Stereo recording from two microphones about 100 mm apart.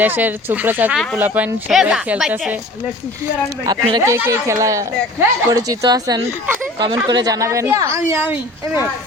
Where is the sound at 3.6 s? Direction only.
45° right (ahead or behind).